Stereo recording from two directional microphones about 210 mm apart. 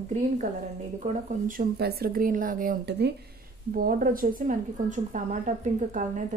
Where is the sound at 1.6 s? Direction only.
50° right (ahead or behind).